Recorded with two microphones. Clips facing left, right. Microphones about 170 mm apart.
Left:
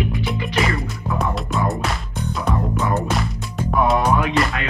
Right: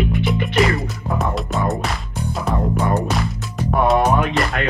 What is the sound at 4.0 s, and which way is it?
Music, 45° right (ahead or behind).